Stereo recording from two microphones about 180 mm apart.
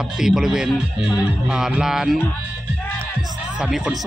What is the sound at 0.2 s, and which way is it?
Speech, centre (ahead or behind).